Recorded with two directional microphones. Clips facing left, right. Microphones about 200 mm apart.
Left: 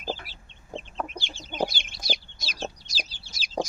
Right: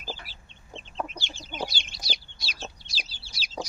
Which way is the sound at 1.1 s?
45° left (ahead or behind).